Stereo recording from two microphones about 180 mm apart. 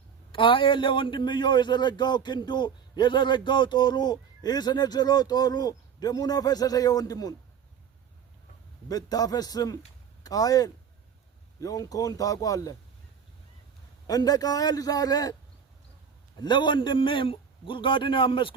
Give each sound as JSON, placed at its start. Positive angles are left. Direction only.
{"t": 0.3, "sound": "a man's voice", "side_deg": 30}
{"t": 8.9, "sound": "a man's voice", "side_deg": 20}
{"t": 14.1, "sound": "a man's voice", "side_deg": 20}
{"t": 16.4, "sound": "a man's voice", "side_deg": 25}